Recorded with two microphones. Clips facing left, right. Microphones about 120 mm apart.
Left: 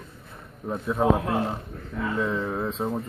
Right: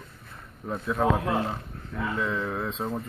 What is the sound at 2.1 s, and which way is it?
Mantra, 25° left (ahead or behind).